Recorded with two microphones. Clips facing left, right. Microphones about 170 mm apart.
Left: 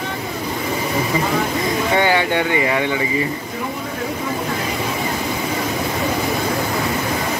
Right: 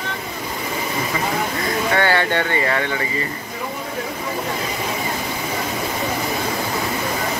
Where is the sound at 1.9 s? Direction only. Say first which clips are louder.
Left 2 dB; 15° left (ahead or behind).